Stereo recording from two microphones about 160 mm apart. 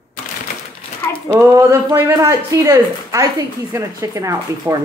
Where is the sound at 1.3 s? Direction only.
15° right (ahead or behind).